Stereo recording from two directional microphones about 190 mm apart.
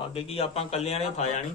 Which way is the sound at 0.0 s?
30° left (ahead or behind).